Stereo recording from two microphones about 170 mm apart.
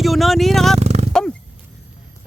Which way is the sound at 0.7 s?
40° right (ahead or behind).